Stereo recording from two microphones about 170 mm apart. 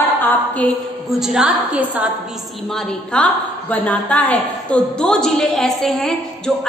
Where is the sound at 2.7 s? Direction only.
5° left (ahead or behind).